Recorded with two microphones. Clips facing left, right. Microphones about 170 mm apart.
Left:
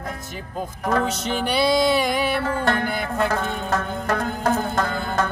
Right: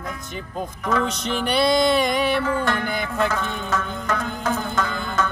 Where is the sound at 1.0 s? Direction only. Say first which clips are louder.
Even; 5° left (ahead or behind).